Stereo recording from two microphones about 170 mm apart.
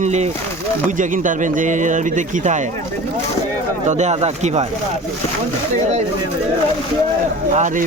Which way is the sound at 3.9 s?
40° right (ahead or behind).